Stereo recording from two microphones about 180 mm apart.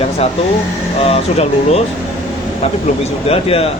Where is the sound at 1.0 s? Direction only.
35° left (ahead or behind).